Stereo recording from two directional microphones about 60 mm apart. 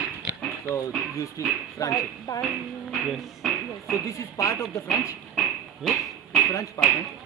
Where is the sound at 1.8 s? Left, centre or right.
Left.